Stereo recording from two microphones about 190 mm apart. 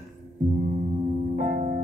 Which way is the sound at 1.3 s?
40° right (ahead or behind).